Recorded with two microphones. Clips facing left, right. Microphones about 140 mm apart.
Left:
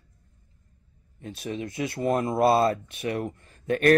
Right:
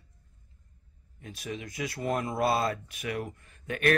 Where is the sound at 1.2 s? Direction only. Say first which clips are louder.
Left 6 dB; 30° left (ahead or behind).